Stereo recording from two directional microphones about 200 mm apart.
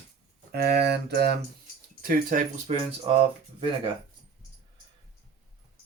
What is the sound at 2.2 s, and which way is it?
Speech, 40° right (ahead or behind).